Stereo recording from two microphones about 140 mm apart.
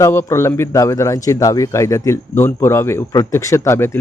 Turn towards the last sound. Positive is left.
turn(degrees=20)  # may be behind; listen again after turning